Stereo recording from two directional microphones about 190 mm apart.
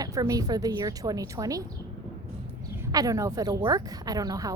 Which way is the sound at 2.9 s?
20° right (ahead or behind).